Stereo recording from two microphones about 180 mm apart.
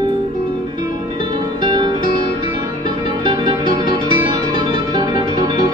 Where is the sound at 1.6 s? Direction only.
25° right (ahead or behind).